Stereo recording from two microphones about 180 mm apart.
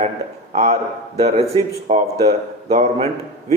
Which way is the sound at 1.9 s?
40° right (ahead or behind).